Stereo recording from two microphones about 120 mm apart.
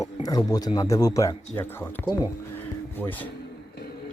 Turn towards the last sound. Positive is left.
turn(degrees=15)  # may be behind; listen again after turning